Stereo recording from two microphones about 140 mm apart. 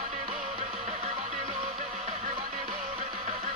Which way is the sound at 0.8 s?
55° right (ahead or behind).